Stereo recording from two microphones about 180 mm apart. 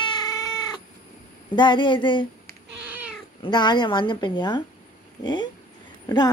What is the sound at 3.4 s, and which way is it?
Speech, 25° left (ahead or behind).